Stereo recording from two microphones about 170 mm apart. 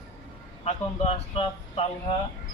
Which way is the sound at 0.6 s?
40° left (ahead or behind).